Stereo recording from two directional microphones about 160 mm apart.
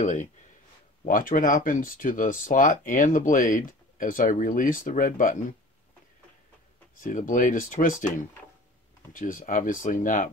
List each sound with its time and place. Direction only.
0.0 s speech: 50° left (ahead or behind)
7.0 s speech: 55° left (ahead or behind)
9.1 s speech: 55° left (ahead or behind)